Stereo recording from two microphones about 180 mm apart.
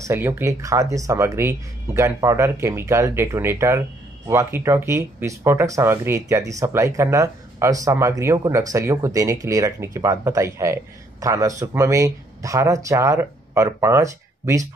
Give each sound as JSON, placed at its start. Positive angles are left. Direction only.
{"t": 0.0, "sound": "speech", "side_deg": -15}